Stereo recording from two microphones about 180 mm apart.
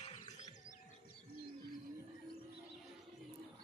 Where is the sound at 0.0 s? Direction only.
35° left (ahead or behind).